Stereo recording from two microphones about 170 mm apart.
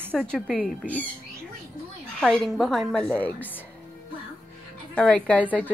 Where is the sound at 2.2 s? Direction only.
5° left (ahead or behind).